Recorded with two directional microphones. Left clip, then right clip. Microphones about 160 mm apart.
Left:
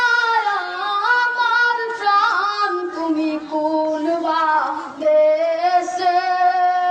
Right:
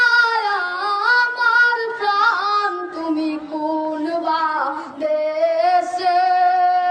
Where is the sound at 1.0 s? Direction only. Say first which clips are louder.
Right 1 dB; 30° right (ahead or behind).